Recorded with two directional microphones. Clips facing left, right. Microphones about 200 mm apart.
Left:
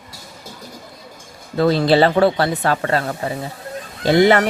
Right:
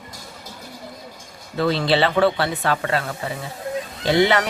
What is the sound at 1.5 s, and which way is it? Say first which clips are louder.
Speech: left 5 dB; 40° left (ahead or behind).